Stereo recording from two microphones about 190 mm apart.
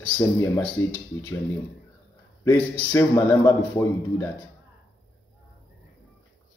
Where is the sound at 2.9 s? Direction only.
15° left (ahead or behind).